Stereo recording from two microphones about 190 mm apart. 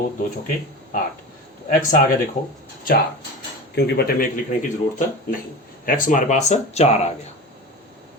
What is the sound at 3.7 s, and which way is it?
Speech, 55° left (ahead or behind).